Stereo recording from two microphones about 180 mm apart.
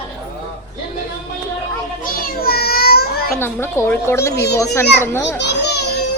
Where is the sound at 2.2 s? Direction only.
55° left (ahead or behind).